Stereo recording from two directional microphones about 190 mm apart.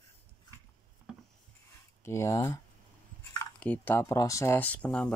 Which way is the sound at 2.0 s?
15° left (ahead or behind).